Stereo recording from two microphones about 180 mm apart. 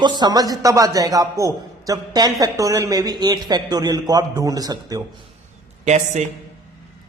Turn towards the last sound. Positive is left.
turn(degrees=-40)  # may be behind; listen again after turning